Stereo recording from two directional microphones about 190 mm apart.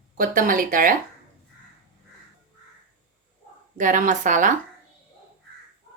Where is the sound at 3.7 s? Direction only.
45° right (ahead or behind).